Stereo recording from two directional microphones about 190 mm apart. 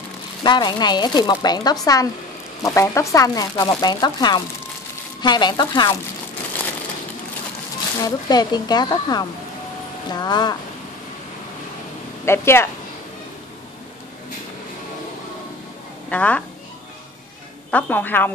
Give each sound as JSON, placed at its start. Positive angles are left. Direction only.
{"t": 0.4, "sound": "speech", "side_deg": 25}
{"t": 8.0, "sound": "speech", "side_deg": 20}
{"t": 12.3, "sound": "a woman's voice", "side_deg": 15}
{"t": 16.1, "sound": "a woman's voice", "side_deg": 5}
{"t": 17.6, "sound": "a woman's voice", "side_deg": 10}